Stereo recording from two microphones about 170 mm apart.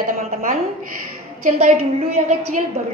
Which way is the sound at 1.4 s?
40° right (ahead or behind).